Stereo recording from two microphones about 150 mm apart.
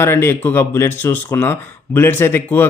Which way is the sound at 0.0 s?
15° left (ahead or behind).